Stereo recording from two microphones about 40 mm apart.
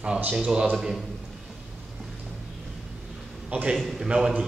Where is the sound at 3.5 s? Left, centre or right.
Right.